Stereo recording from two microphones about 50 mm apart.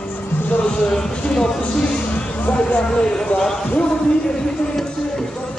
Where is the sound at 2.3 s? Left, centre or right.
Left.